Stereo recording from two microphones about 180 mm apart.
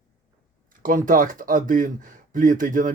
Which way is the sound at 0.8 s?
50° right (ahead or behind).